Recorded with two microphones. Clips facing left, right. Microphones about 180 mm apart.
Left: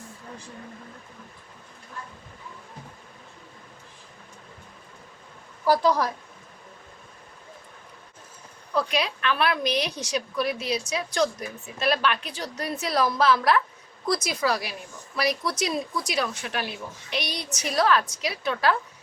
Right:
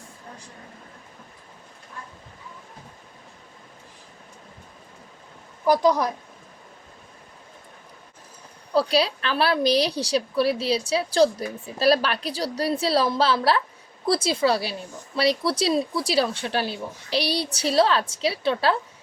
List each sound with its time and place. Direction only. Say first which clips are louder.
5.6 s a woman's voice: right 2 dB; 20° right (ahead or behind)
8.7 s a woman's voice: right 5 dB; 35° right (ahead or behind)